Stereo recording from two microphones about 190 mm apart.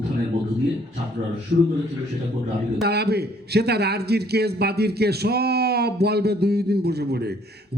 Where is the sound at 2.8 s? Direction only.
60° right (ahead or behind).